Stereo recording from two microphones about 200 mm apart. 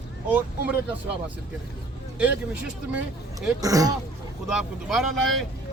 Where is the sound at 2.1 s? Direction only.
5° right (ahead or behind).